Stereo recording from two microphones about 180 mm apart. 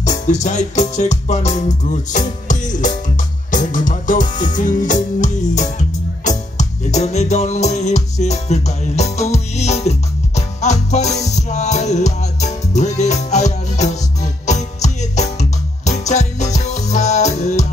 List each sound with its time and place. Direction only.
0.0 s music: 40° left (ahead or behind)